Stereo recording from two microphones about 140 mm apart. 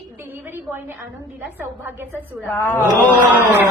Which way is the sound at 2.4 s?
15° left (ahead or behind).